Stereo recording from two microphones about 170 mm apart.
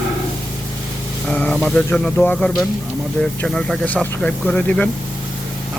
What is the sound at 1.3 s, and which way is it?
Speech, 10° left (ahead or behind).